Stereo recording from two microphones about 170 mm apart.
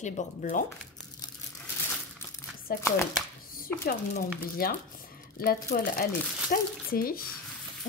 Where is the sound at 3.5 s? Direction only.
60° left (ahead or behind).